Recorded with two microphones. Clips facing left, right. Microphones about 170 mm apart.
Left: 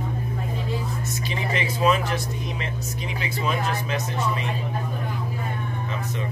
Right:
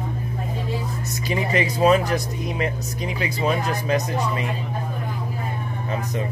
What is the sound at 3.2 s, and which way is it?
Speech, 40° right (ahead or behind).